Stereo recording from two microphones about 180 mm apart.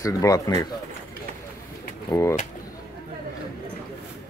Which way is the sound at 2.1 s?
15° left (ahead or behind).